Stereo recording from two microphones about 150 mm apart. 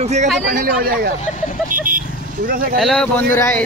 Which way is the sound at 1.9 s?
70° right (ahead or behind).